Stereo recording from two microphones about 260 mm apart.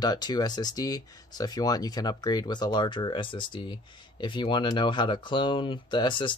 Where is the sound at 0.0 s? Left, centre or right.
Centre.